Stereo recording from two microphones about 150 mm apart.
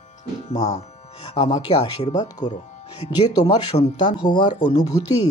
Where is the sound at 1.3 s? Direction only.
40° left (ahead or behind).